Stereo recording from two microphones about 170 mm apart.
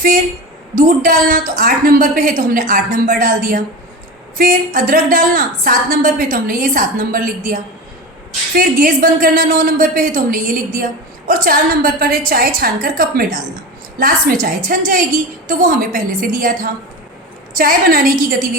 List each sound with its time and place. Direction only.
0.8 s a woman's voice: 55° right (ahead or behind)